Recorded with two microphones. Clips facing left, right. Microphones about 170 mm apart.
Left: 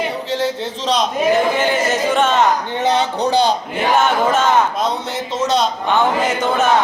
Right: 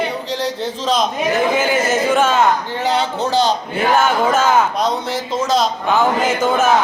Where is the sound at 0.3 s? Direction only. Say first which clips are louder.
Left 1 dB; centre (ahead or behind).